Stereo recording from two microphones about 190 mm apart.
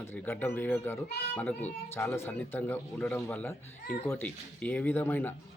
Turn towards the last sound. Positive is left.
turn(degrees=10)  # may be behind; listen again after turning